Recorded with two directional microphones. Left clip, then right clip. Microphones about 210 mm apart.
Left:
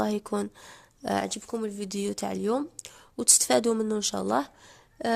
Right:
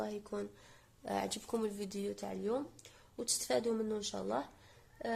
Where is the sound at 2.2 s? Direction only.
50° left (ahead or behind).